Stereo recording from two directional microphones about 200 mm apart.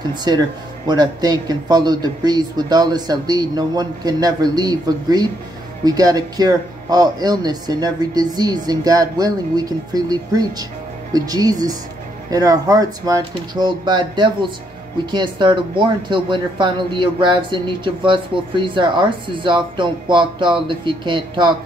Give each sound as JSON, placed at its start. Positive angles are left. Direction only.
{"t": 0.1, "sound": "speech", "side_deg": -20}